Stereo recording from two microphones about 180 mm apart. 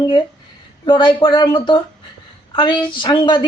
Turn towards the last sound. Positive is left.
turn(degrees=25)  # may be behind; listen again after turning